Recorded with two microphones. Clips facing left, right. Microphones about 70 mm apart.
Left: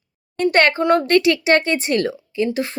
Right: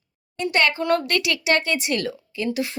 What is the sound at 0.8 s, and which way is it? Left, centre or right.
A woman's voice, left.